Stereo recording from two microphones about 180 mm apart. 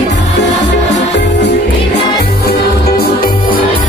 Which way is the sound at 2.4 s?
60° left (ahead or behind).